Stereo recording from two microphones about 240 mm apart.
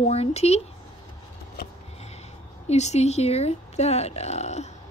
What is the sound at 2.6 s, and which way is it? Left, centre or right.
Speech, left.